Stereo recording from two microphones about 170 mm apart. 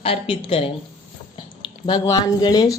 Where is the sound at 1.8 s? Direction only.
25° left (ahead or behind).